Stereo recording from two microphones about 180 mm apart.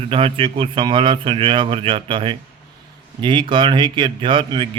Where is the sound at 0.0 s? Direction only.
30° right (ahead or behind).